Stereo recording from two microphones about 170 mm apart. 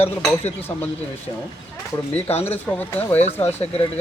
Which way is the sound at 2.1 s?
40° left (ahead or behind).